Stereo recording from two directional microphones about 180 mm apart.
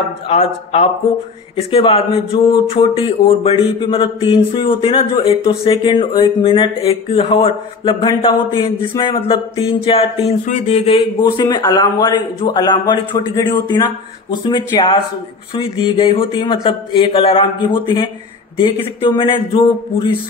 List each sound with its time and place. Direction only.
0.3 s speech: 35° left (ahead or behind)
11.0 s speech: 25° left (ahead or behind)